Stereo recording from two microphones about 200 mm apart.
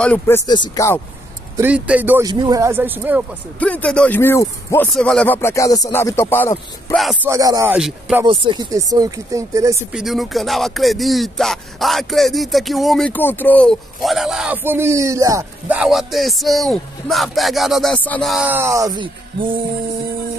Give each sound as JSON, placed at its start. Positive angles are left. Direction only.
{"t": 0.0, "sound": "speech", "side_deg": 5}
{"t": 0.5, "sound": "speech", "side_deg": 20}
{"t": 1.6, "sound": "speech", "side_deg": -10}
{"t": 2.2, "sound": "speech", "side_deg": -20}
{"t": 3.5, "sound": "speech", "side_deg": 5}
{"t": 7.2, "sound": "speech", "side_deg": -15}
{"t": 7.7, "sound": "speech", "side_deg": -5}
{"t": 8.3, "sound": "speech", "side_deg": -20}
{"t": 9.9, "sound": "speech", "side_deg": 0}
{"t": 15.8, "sound": "speech", "side_deg": 0}